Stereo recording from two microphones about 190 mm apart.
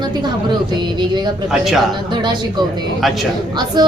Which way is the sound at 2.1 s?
25° right (ahead or behind).